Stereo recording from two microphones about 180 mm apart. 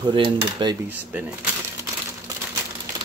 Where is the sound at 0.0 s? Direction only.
25° right (ahead or behind).